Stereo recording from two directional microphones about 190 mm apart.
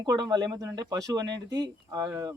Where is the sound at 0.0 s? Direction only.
20° right (ahead or behind).